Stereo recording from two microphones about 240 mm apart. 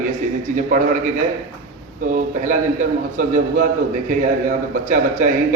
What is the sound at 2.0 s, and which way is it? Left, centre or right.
A man's voice, right.